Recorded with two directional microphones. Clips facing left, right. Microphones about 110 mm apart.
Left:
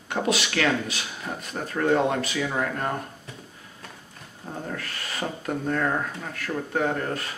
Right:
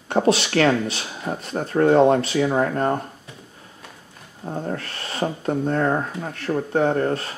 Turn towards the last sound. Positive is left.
turn(degrees=-35)  # may be behind; listen again after turning